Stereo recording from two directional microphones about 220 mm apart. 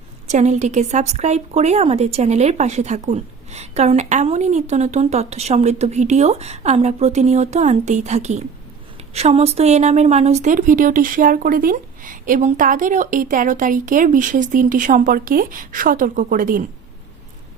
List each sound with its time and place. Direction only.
0.3 s a woman's voice: 30° right (ahead or behind)